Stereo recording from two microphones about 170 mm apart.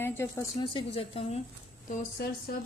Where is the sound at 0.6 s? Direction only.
30° left (ahead or behind).